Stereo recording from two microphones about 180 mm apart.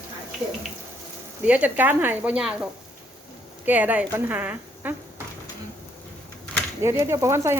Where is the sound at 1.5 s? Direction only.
10° right (ahead or behind).